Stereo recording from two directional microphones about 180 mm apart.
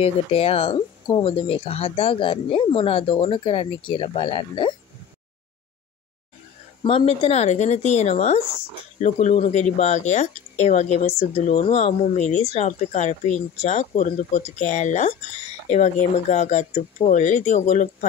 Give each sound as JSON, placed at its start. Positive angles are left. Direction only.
{"t": 0.0, "sound": "speech", "side_deg": 35}
{"t": 6.8, "sound": "speech", "side_deg": 30}